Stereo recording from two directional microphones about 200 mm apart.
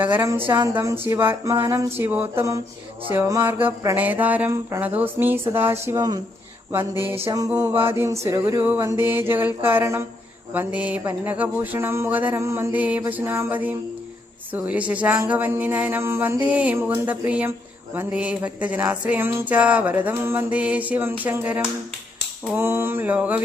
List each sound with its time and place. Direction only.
0.0 s music: 10° right (ahead or behind)
7.3 s music: 15° right (ahead or behind)